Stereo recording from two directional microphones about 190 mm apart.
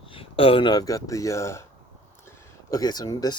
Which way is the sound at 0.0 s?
30° left (ahead or behind).